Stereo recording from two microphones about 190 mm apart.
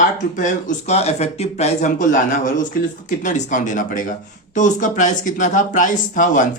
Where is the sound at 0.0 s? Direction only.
40° left (ahead or behind).